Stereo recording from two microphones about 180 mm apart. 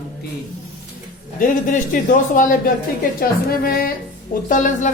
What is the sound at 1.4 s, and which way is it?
A man's voice, 50° left (ahead or behind).